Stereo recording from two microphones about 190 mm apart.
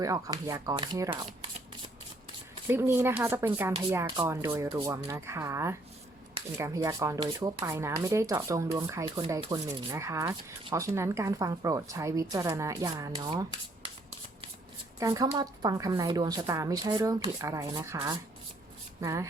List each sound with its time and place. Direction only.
0.0 s speech: 15° right (ahead or behind)
2.6 s speech: 10° right (ahead or behind)
14.9 s speech: 20° right (ahead or behind)